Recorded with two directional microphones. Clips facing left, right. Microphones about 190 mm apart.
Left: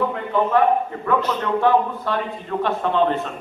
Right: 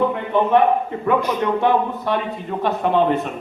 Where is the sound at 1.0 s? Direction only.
10° right (ahead or behind).